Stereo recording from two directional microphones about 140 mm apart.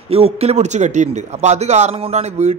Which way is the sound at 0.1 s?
45° right (ahead or behind).